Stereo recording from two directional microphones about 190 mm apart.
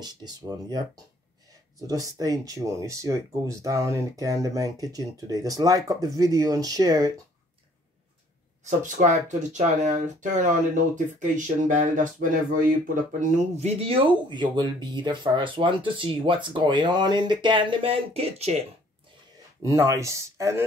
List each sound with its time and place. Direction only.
0.0 s speech: 20° right (ahead or behind)
8.6 s speech: 40° right (ahead or behind)
19.6 s speech: 15° right (ahead or behind)